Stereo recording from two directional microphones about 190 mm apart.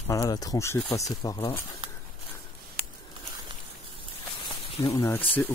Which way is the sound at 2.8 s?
55° right (ahead or behind).